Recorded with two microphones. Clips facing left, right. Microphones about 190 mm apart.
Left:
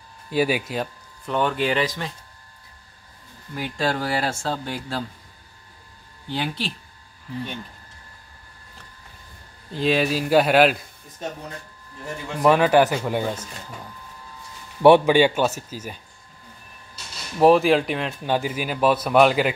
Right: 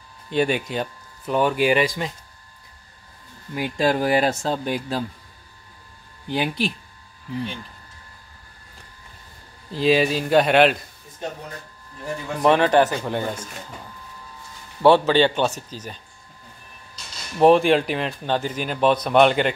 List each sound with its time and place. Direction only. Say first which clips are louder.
0.3 s speech: even; 5° left (ahead or behind); by 2.1 s 15° right (ahead or behind)
3.5 s speech: right 4 dB; 15° right (ahead or behind)
6.3 s speech: right 4 dB; 15° right (ahead or behind)
9.7 s speech: right 2 dB; centre (ahead or behind)
12.4 s speech: even; 5° left (ahead or behind)
14.8 s speech: left 2 dB; 15° left (ahead or behind)
17.4 s speech: right 1 dB; centre (ahead or behind)